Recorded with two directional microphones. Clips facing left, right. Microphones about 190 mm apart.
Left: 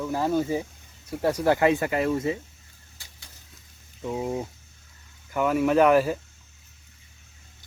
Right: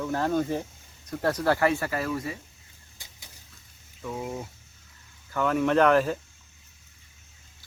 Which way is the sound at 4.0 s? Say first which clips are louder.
Left 5 dB; 25° left (ahead or behind).